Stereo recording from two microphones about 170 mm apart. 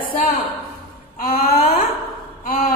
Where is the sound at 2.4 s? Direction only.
60° left (ahead or behind).